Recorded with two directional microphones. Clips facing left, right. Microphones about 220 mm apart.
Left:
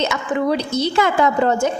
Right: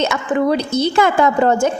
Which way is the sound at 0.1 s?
50° right (ahead or behind).